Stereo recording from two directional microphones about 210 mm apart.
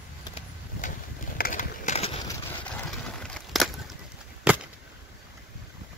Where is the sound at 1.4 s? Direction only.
35° left (ahead or behind).